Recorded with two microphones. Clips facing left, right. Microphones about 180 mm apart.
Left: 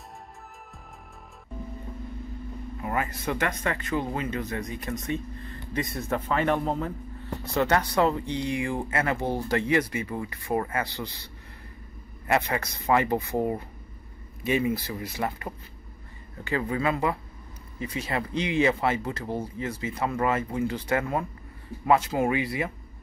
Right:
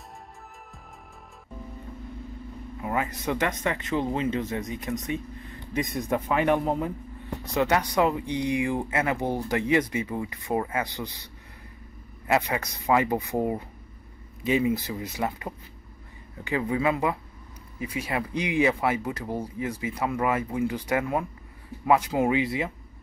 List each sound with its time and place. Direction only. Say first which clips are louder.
2.8 s speech: right 1 dB; 15° right (ahead or behind)
12.4 s speech: even; 15° right (ahead or behind)